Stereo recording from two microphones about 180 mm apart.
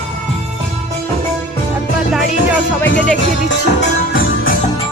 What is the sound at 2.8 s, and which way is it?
Speech, 80° left.